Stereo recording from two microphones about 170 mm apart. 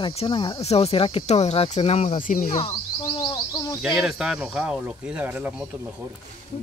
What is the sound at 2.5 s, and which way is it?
Cricket, 30° left (ahead or behind).